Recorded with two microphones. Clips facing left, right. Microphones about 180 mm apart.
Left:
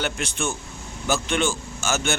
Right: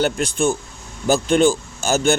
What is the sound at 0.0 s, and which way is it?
Speech, 35° right (ahead or behind).